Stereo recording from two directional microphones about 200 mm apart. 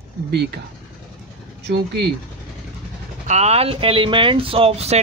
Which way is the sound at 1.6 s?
60° right (ahead or behind).